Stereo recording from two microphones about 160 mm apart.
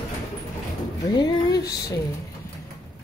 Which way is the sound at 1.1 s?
25° left (ahead or behind).